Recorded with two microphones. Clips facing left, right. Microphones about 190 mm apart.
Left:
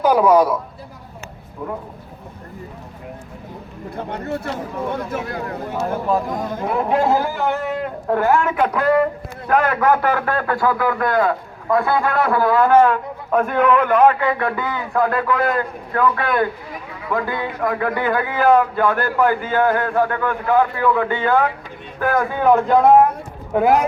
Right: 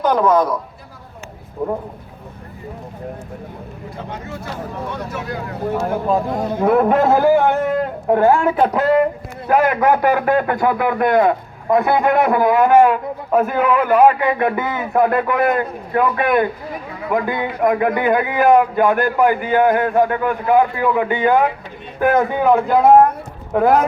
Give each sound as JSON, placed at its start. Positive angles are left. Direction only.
{"t": 0.0, "sound": "speech", "side_deg": 10}
{"t": 1.6, "sound": "speech", "side_deg": -35}
{"t": 3.9, "sound": "speech", "side_deg": 60}
{"t": 6.1, "sound": "a man's voice", "side_deg": -25}
{"t": 6.6, "sound": "speech", "side_deg": -55}
{"t": 8.0, "sound": "speech", "side_deg": -20}
{"t": 8.3, "sound": "speech", "side_deg": -35}
{"t": 9.5, "sound": "a man's voice", "side_deg": -10}
{"t": 22.4, "sound": "speech", "side_deg": -5}